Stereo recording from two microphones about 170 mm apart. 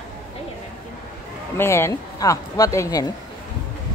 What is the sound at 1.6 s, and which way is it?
Speech, 15° left (ahead or behind).